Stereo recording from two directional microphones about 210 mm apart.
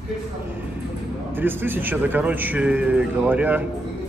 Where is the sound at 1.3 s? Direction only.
10° right (ahead or behind).